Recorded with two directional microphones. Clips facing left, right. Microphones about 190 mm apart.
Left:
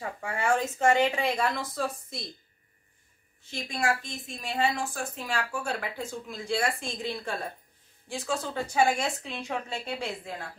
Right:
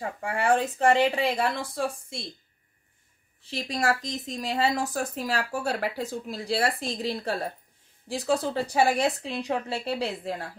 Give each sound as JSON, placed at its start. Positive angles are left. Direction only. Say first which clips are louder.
{"t": 0.0, "sound": "speech", "louder": "right 3 dB", "side_deg": -35}
{"t": 3.5, "sound": "speech", "louder": "right 3 dB", "side_deg": -35}